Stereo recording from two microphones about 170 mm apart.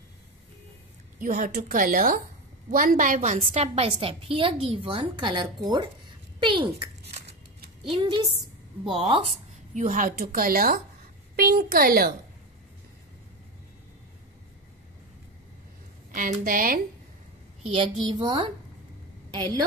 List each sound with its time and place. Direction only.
1.2 s a woman's voice: 50° right (ahead or behind)
16.1 s a woman's voice: 50° right (ahead or behind)
17.6 s a woman's voice: 30° right (ahead or behind)